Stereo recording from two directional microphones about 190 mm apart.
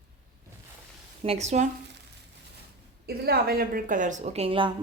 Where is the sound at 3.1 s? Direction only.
55° right (ahead or behind); by 4.7 s 30° right (ahead or behind).